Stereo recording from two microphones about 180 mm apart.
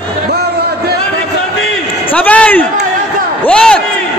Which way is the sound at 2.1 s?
10° left (ahead or behind).